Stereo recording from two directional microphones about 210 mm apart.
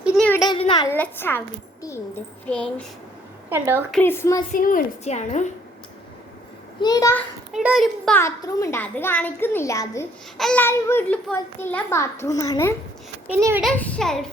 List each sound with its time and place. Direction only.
0.3 s a child's voice: 20° left (ahead or behind)
0.9 s a child's voice: 10° left (ahead or behind)
2.5 s a child's voice: 5° left (ahead or behind)
3.5 s a child's voice: 10° right (ahead or behind)
3.9 s a child's voice: 10° left (ahead or behind)
4.5 s a woman's voice: 40° left (ahead or behind)
6.8 s a child's voice: 15° left (ahead or behind)
7.5 s a child's voice: 5° right (ahead or behind)
8.2 s a child's voice: 15° left (ahead or behind)
10.3 s a child's voice: 5° left (ahead or behind)
13.2 s a child's voice: 10° right (ahead or behind)
13.7 s a child's voice: 5° left (ahead or behind)